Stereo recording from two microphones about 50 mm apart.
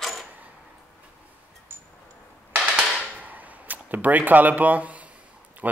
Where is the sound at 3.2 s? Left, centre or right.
Right.